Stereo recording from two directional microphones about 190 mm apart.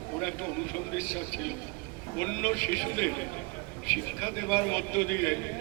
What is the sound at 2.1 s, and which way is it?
A man's voice, 10° left (ahead or behind).